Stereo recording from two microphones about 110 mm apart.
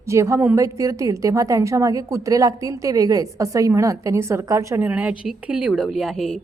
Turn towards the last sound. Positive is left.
turn(degrees=0)  # may be behind; listen again after turning